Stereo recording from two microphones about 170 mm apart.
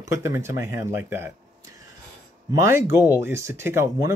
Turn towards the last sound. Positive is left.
turn(degrees=-15)  # may be behind; listen again after turning